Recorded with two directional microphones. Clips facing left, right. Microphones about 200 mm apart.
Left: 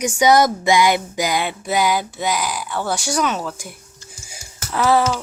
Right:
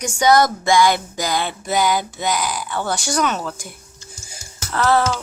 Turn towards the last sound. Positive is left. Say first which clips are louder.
# left 1 dB
turn(degrees=5)  # may be behind; listen again after turning